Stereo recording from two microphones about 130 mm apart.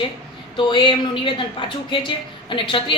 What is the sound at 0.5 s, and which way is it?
A woman's voice, 35° left (ahead or behind).